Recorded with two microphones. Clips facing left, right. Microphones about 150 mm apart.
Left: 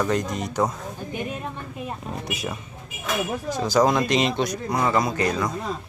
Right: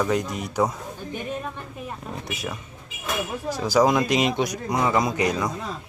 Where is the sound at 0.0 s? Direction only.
10° right (ahead or behind).